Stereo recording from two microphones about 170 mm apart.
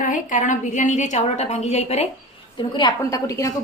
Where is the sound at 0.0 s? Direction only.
50° left (ahead or behind).